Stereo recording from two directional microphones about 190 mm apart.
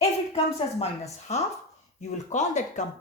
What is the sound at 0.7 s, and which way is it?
Speech, 35° left (ahead or behind).